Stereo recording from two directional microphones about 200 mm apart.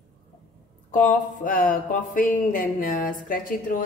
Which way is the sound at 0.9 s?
40° left (ahead or behind).